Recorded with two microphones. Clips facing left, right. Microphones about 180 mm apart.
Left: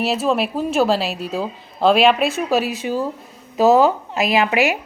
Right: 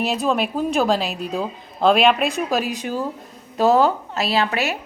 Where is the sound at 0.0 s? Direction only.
Centre (ahead or behind).